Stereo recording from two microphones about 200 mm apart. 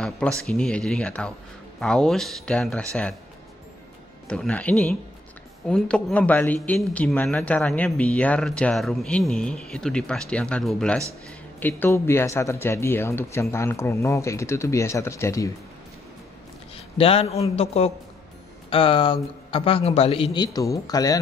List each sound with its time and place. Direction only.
0.5 s speech: 5° left (ahead or behind)
4.3 s speech: 5° left (ahead or behind)
17.0 s a man's voice: 30° left (ahead or behind)
20.3 s speech: 15° left (ahead or behind)